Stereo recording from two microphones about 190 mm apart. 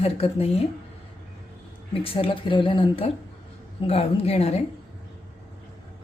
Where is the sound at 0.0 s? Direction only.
30° left (ahead or behind).